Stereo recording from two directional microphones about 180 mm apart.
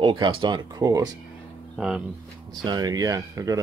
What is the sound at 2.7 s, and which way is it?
Speech, 20° right (ahead or behind).